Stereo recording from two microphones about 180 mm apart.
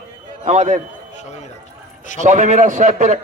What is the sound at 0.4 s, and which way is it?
Speech, 40° right (ahead or behind).